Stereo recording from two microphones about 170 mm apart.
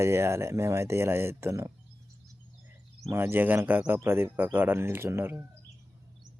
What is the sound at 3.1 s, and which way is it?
Speech, 15° right (ahead or behind).